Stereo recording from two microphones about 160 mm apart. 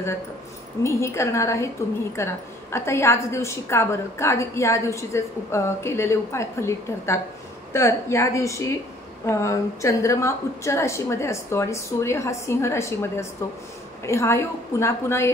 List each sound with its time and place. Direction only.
0.8 s a woman's voice: 20° left (ahead or behind)